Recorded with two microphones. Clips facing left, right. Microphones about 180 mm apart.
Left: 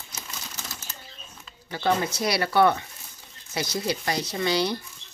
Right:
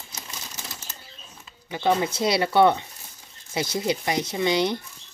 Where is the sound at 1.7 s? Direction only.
20° right (ahead or behind).